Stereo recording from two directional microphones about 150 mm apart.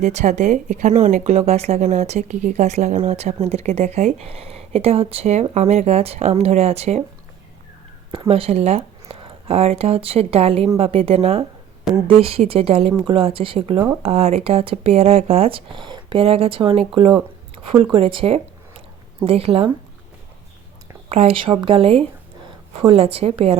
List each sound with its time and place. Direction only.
0.0 s speech: 50° right (ahead or behind)
8.3 s speech: 40° right (ahead or behind)
21.1 s speech: 40° right (ahead or behind)